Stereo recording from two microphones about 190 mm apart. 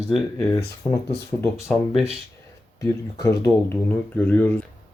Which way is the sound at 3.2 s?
15° left (ahead or behind).